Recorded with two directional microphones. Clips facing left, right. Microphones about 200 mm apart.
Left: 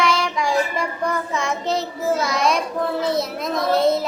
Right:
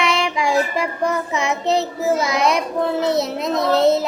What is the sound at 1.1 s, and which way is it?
A child's voice, 20° right (ahead or behind).